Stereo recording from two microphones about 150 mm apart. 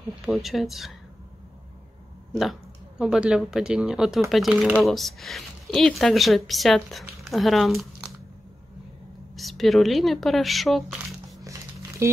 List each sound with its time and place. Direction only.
0.2 s speech: centre (ahead or behind)
3.0 s speech: 5° right (ahead or behind)
9.3 s speech: centre (ahead or behind)
11.5 s a sound: 20° right (ahead or behind)
12.0 s speech: 20° right (ahead or behind)